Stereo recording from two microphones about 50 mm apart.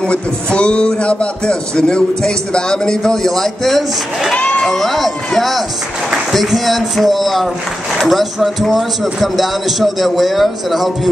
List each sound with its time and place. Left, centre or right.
0.0 s a man's voice: centre
4.4 s a sound: left
4.6 s speech: centre